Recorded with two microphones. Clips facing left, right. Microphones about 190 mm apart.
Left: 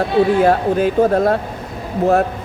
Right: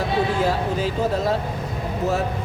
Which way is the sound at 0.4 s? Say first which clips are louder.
Left 8 dB; 60° left (ahead or behind).